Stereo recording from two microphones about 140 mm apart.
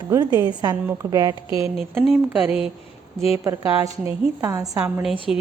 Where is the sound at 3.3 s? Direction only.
25° right (ahead or behind).